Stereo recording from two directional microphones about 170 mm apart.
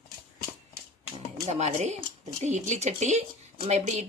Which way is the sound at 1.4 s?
40° right (ahead or behind).